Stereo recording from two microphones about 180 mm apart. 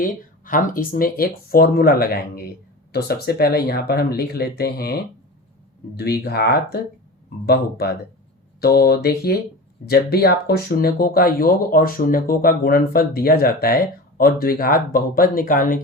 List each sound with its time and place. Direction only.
0.0 s speech: 50° left (ahead or behind)